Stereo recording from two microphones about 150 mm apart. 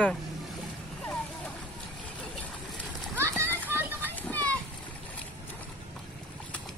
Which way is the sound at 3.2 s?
15° right (ahead or behind).